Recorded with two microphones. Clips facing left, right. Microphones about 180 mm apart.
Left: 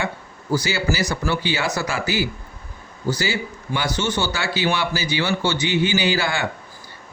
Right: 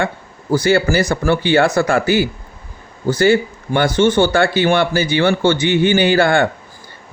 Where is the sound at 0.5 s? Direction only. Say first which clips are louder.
Right 8 dB; 55° right (ahead or behind).